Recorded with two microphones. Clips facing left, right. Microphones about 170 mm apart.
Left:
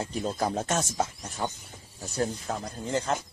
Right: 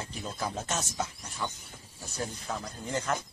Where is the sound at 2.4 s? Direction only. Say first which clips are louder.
Left 3 dB; 30° left (ahead or behind).